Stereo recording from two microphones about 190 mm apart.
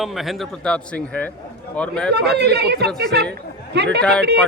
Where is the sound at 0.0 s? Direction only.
Centre (ahead or behind).